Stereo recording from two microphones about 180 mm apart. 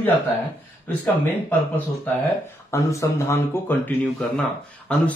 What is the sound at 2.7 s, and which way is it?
Speech, 15° left (ahead or behind).